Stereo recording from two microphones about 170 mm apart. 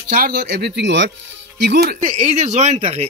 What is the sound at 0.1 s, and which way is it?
Speech, 60° right (ahead or behind).